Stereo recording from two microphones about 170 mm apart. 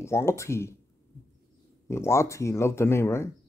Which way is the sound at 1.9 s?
15° left (ahead or behind).